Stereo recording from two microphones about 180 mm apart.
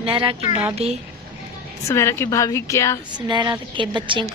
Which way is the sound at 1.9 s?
15° left (ahead or behind).